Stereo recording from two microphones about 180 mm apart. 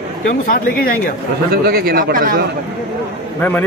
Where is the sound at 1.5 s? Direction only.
60° right (ahead or behind).